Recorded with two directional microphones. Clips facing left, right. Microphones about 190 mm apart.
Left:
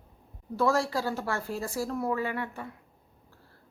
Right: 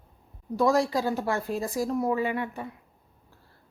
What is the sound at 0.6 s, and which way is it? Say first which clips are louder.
Speech: right 3 dB; 15° right (ahead or behind).